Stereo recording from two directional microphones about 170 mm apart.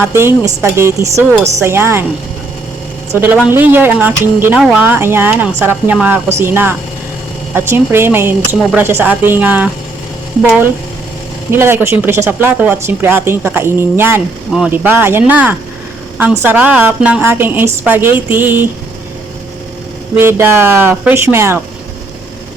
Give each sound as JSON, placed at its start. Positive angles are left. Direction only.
{"t": 0.0, "sound": "speech", "side_deg": -15}
{"t": 3.1, "sound": "speech", "side_deg": -10}
{"t": 20.1, "sound": "speech", "side_deg": -15}